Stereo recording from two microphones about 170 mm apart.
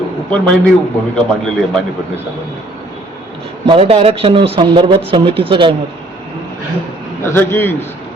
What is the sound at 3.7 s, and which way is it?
Speech, 35° right (ahead or behind).